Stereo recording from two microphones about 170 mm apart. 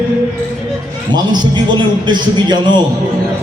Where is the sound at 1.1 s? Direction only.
25° right (ahead or behind).